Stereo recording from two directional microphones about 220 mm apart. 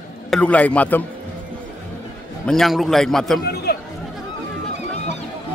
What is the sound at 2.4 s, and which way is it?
Speech, centre (ahead or behind).